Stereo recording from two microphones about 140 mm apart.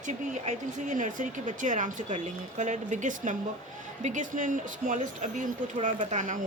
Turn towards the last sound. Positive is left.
turn(degrees=-60)  # may be behind; listen again after turning